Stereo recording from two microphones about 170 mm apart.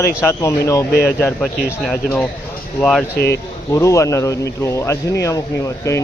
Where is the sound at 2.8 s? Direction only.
Centre (ahead or behind).